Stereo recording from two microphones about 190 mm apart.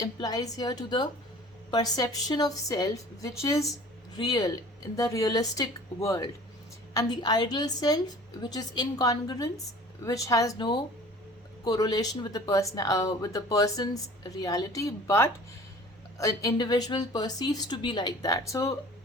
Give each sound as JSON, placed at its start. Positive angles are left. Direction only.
{"t": 0.0, "sound": "speech", "side_deg": 20}